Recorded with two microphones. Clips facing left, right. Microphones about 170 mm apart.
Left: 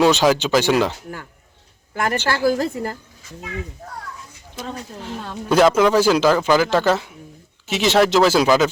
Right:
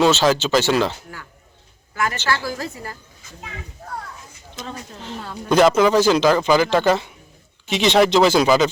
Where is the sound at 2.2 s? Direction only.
55° left (ahead or behind).